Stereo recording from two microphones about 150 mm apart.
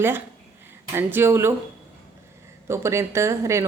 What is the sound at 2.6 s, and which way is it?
Speech, 20° right (ahead or behind).